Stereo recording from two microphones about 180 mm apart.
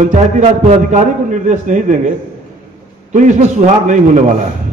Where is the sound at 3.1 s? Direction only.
40° right (ahead or behind).